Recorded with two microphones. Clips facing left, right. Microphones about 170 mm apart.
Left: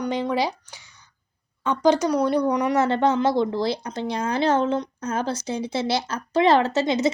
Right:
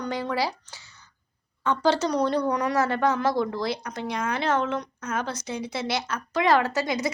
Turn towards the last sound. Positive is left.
turn(degrees=25)  # may be behind; listen again after turning